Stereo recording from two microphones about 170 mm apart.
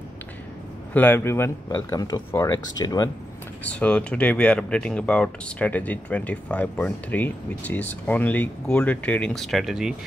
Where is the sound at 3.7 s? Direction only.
5° left (ahead or behind).